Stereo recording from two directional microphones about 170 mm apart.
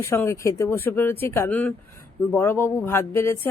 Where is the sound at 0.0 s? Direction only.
15° left (ahead or behind).